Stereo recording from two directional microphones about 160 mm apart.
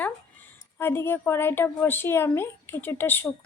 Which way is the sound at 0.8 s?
15° left (ahead or behind).